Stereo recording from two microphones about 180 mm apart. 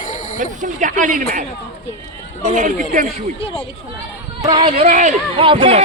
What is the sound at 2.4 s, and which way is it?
Speech, 40° right (ahead or behind).